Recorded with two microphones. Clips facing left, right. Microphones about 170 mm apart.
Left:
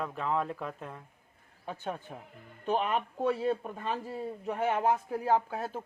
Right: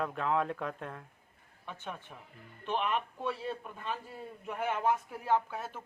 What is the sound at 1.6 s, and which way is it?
Speech, 35° left (ahead or behind).